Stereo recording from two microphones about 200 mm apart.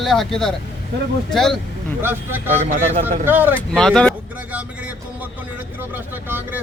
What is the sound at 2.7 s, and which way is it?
Speech, 35° right (ahead or behind).